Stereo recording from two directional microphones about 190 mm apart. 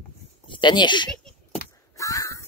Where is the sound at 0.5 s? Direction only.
25° left (ahead or behind).